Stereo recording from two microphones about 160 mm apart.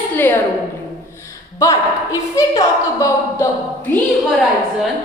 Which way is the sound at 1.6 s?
20° left (ahead or behind).